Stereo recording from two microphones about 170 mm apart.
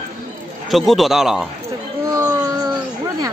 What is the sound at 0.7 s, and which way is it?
Speech, centre (ahead or behind).